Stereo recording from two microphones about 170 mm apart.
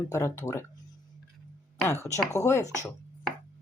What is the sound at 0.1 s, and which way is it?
Speech, 15° left (ahead or behind).